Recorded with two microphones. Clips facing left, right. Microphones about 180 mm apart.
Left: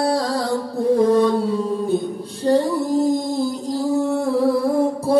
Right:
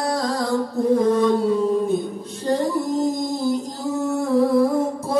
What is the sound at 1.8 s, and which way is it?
Female singing, 30° left (ahead or behind).